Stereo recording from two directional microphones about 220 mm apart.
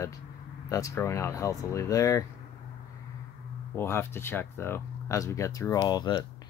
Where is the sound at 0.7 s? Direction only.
15° left (ahead or behind).